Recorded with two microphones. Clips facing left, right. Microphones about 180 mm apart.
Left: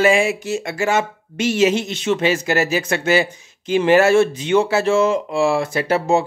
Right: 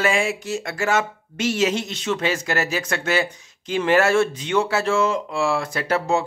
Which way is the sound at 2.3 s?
25° left (ahead or behind).